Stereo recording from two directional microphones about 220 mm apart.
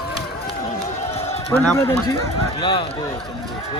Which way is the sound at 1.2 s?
25° left (ahead or behind).